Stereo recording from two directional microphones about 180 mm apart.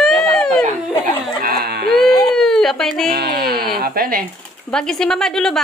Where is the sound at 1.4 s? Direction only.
60° right (ahead or behind).